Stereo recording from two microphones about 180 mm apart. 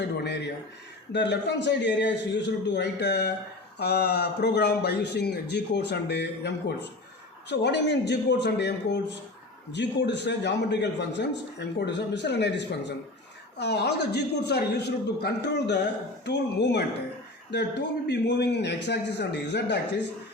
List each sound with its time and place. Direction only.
1.1 s a man's voice: 75° left (ahead or behind)